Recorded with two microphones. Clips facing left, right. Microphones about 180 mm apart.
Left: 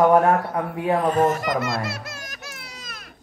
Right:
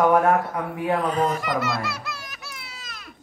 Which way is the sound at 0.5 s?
45° left (ahead or behind).